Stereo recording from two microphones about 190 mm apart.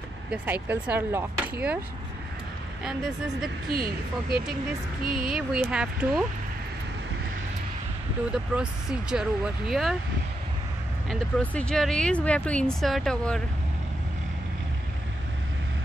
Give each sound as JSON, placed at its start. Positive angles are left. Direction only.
{"t": 0.3, "sound": "speech", "side_deg": -10}
{"t": 3.7, "sound": "speech", "side_deg": -50}
{"t": 5.1, "sound": "speech", "side_deg": -5}
{"t": 9.1, "sound": "speech", "side_deg": -5}
{"t": 11.1, "sound": "speech", "side_deg": 5}